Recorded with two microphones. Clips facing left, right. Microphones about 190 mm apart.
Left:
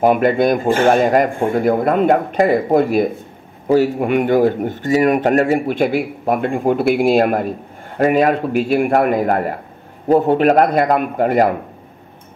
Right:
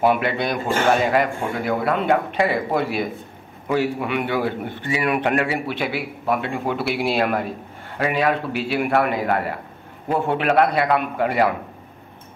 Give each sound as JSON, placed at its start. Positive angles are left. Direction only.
{"t": 0.0, "sound": "a man's voice", "side_deg": 45}